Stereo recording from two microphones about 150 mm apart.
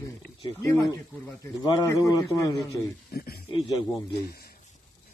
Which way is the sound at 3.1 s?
90° left.